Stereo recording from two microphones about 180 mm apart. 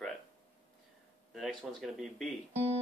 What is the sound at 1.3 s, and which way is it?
Speech, centre (ahead or behind).